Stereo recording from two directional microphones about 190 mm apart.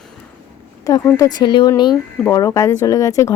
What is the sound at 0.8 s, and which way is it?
A woman's voice, 15° left (ahead or behind).